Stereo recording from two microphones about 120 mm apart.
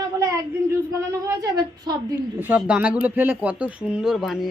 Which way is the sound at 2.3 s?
10° right (ahead or behind).